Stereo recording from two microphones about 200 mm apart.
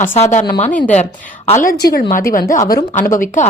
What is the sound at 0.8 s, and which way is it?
A woman's voice, 35° left (ahead or behind).